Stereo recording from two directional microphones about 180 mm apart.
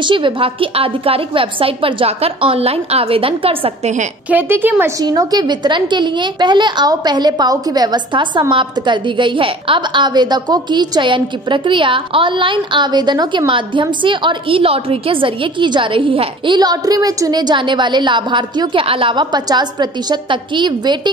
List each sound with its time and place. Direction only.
0.0 s a woman's voice: 25° right (ahead or behind)
4.3 s a woman's voice: 10° right (ahead or behind)